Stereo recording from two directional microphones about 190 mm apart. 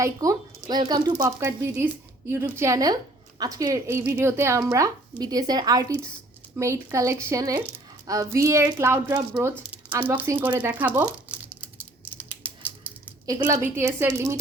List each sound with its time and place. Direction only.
0.0 s a woman's voice: 20° right (ahead or behind)
12.1 s a sound: 10° right (ahead or behind)
13.2 s a woman's voice: 15° right (ahead or behind)